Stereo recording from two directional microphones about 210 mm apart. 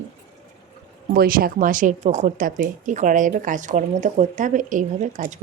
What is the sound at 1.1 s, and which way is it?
Speech, 45° right (ahead or behind).